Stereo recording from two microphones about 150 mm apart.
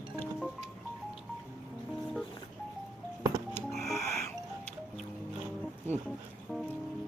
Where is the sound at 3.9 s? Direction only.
20° left (ahead or behind).